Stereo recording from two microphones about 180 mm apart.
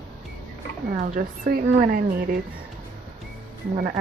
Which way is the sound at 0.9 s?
50° right (ahead or behind).